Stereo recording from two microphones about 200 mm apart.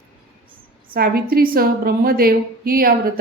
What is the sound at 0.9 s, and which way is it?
A woman's voice, 50° right (ahead or behind).